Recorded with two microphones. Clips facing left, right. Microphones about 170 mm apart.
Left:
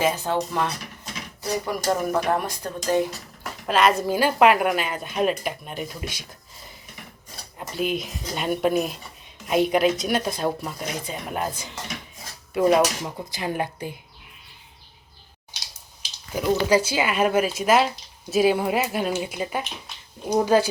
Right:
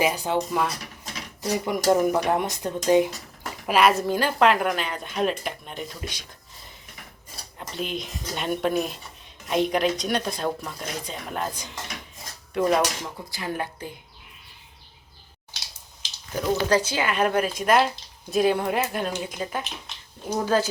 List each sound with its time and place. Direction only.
0.0 s speech: 10° right (ahead or behind)
3.7 s speech: 10° right (ahead or behind)
4.0 s speech: 5° left (ahead or behind)
7.6 s speech: 5° left (ahead or behind)
16.3 s speech: 10° left (ahead or behind)